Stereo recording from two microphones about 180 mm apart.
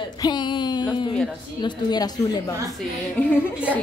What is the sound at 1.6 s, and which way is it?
Speech, 25° left (ahead or behind).